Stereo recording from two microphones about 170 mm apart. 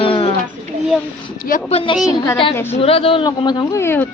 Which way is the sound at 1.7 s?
30° left (ahead or behind).